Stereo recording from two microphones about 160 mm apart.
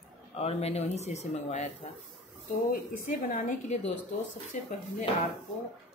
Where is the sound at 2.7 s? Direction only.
60° left (ahead or behind).